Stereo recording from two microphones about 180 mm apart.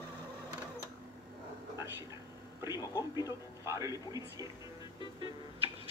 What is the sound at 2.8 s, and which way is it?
Music, 20° left (ahead or behind).